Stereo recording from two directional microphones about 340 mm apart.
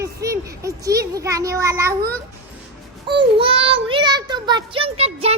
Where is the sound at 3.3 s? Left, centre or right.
Centre.